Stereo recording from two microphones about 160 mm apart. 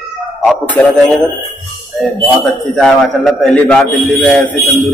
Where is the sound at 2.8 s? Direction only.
5° left (ahead or behind).